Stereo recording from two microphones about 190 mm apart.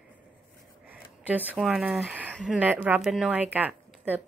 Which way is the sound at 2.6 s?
10° right (ahead or behind).